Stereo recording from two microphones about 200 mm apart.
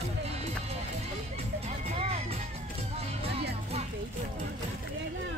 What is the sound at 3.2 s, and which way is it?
Music, 30° right (ahead or behind).